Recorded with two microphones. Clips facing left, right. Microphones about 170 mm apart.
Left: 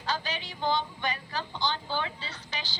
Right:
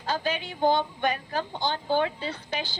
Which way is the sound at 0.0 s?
50° right (ahead or behind).